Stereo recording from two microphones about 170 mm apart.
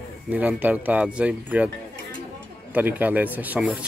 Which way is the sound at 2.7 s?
10° right (ahead or behind).